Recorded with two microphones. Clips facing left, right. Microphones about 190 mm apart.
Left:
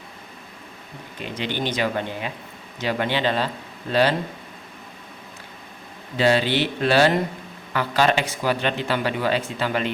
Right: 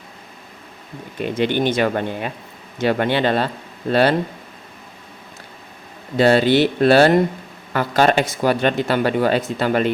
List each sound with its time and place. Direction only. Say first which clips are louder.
1.2 s speech: right 8 dB; 55° right (ahead or behind)
6.1 s speech: right 6 dB; 50° right (ahead or behind)